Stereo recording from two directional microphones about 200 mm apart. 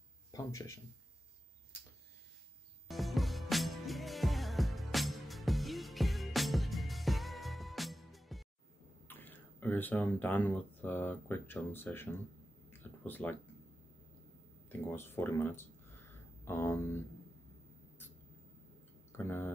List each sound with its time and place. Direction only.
0.3 s speech: 15° left (ahead or behind)
2.9 s music: centre (ahead or behind)
9.0 s speech: 10° left (ahead or behind)
12.6 s a sound: 10° left (ahead or behind)
14.7 s speech: 10° left (ahead or behind)
19.1 s speech: 10° left (ahead or behind)